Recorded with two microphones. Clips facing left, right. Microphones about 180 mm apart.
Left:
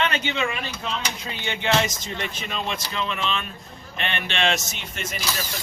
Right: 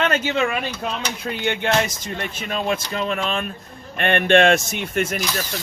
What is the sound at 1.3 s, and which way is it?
Speech, 55° right (ahead or behind).